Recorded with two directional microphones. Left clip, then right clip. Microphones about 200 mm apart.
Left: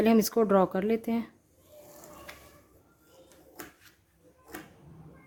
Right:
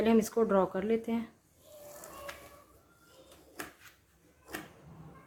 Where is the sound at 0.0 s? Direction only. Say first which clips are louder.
Left 3 dB; 50° left (ahead or behind).